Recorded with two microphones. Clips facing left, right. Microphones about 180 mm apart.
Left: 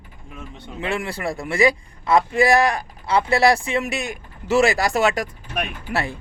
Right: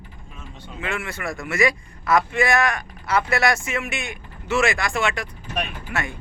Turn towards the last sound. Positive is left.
turn(degrees=35)  # may be behind; listen again after turning